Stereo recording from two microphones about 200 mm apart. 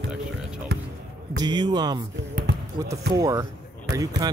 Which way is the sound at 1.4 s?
20° right (ahead or behind).